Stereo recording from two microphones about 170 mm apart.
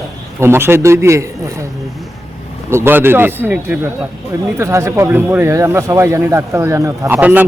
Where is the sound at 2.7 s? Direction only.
15° right (ahead or behind).